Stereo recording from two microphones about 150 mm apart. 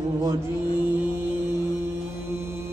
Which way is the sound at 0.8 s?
15° right (ahead or behind).